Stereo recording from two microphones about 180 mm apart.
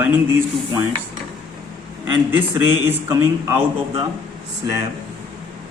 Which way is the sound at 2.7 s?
10° right (ahead or behind).